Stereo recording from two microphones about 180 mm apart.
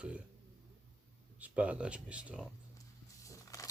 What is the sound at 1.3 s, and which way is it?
Speech, 10° right (ahead or behind).